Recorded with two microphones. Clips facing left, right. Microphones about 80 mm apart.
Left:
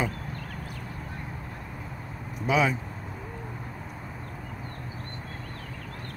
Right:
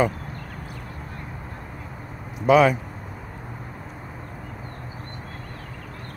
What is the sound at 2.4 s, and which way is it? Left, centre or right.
Speech, right.